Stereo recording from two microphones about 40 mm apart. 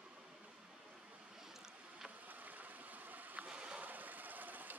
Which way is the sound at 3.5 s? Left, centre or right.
Right.